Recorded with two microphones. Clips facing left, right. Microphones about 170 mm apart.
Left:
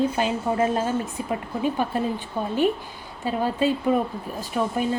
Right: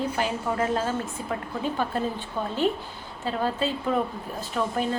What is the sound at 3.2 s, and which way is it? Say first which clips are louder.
Speech: left 4 dB; 15° left (ahead or behind).